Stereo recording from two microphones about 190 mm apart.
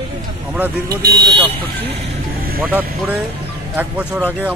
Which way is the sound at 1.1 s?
20° right (ahead or behind).